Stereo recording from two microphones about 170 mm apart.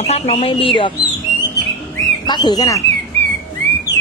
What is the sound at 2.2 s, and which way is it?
Speech, 25° left (ahead or behind).